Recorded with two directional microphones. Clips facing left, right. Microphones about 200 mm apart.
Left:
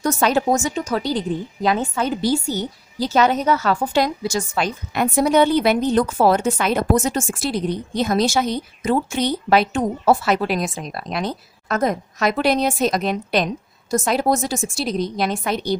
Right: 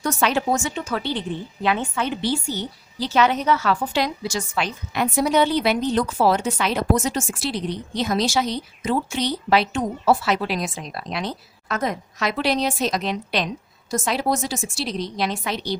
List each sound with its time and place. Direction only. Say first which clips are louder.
0.0 s a woman's voice: left 3 dB; 40° left (ahead or behind)